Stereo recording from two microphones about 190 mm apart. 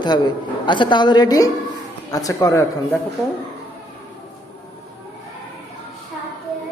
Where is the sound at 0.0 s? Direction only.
25° left (ahead or behind).